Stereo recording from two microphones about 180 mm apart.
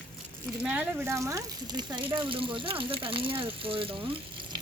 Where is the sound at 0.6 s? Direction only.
5° right (ahead or behind); by 4.2 s 30° right (ahead or behind).